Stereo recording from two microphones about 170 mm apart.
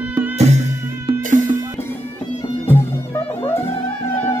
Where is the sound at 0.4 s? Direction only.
40° right (ahead or behind).